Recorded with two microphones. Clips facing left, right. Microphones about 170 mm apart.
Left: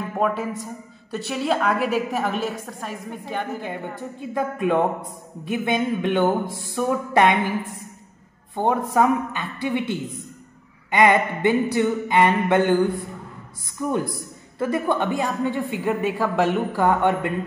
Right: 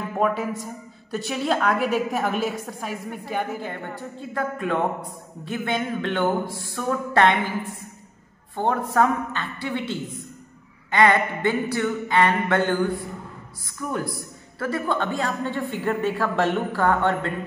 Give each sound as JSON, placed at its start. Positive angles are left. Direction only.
{"t": 0.2, "sound": "a woman's voice", "side_deg": 0}
{"t": 3.6, "sound": "speech", "side_deg": 15}
{"t": 8.5, "sound": "a man's voice", "side_deg": 15}